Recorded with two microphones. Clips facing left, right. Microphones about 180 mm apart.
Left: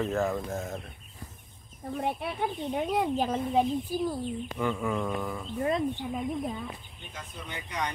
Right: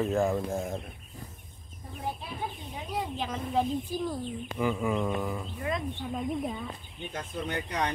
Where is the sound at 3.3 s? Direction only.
15° left (ahead or behind).